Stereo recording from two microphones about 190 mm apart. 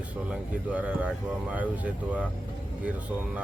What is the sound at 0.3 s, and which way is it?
A man's voice, 5° right (ahead or behind).